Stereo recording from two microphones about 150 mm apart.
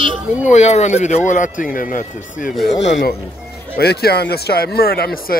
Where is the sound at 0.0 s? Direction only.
55° left (ahead or behind).